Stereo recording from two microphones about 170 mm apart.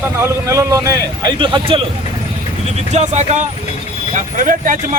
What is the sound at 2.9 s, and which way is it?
Speech, 40° right (ahead or behind).